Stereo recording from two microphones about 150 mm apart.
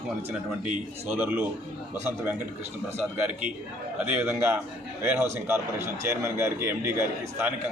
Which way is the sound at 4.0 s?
10° right (ahead or behind).